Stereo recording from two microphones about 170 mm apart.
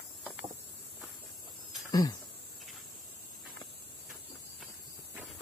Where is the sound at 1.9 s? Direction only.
20° left (ahead or behind).